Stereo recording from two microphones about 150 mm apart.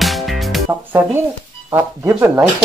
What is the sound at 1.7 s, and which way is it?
Speech, 15° right (ahead or behind).